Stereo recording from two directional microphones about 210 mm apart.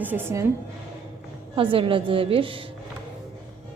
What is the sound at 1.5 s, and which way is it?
A woman's voice, 25° right (ahead or behind).